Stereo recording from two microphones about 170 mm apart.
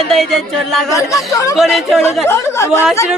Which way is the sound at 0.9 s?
20° left (ahead or behind).